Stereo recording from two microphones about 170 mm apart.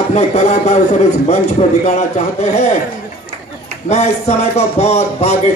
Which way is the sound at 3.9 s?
40° left (ahead or behind).